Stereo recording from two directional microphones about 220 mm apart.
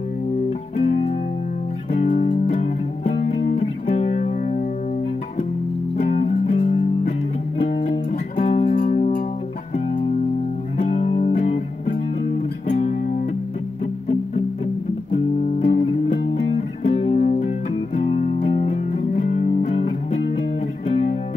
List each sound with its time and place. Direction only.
0.7 s music: 30° left (ahead or behind)
5.9 s music: 30° left (ahead or behind)
8.5 s music: 30° left (ahead or behind)
12.6 s music: 30° left (ahead or behind)
15.6 s music: 35° left (ahead or behind)